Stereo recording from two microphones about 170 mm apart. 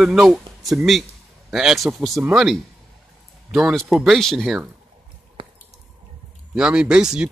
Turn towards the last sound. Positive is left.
turn(degrees=-5)  # may be behind; listen again after turning